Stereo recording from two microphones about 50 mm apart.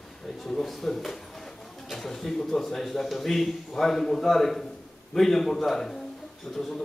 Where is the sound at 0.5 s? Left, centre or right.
Centre.